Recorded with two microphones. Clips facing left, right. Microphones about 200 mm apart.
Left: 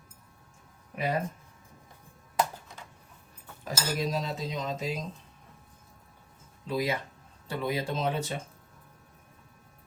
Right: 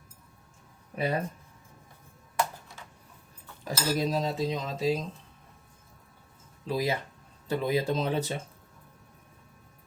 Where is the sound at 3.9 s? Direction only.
35° right (ahead or behind).